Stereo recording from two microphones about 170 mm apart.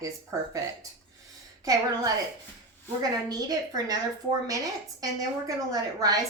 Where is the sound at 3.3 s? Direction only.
20° right (ahead or behind).